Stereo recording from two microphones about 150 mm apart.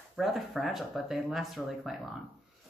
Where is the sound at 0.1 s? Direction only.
Centre (ahead or behind).